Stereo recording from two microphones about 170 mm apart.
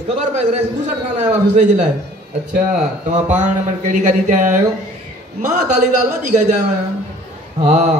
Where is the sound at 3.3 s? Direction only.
45° right (ahead or behind).